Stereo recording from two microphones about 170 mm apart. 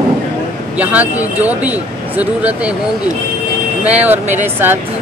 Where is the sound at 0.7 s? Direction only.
10° right (ahead or behind).